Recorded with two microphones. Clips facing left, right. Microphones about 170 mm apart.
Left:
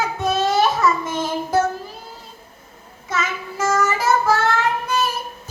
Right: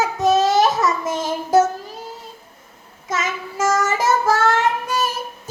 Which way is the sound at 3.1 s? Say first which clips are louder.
Right 1 dB; 45° right (ahead or behind).